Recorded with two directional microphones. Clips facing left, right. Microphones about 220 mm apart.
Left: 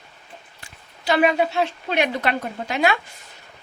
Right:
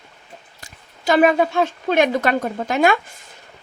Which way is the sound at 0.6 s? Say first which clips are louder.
Right 2 dB; 45° right (ahead or behind).